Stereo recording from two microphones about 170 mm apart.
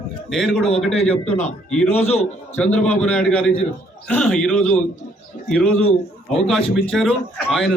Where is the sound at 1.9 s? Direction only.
40° left (ahead or behind).